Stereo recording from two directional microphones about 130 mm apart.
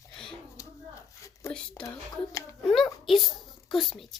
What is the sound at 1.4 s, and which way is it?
Speech, 20° left (ahead or behind).